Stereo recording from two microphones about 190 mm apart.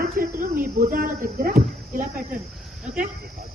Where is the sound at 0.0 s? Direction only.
50° right (ahead or behind).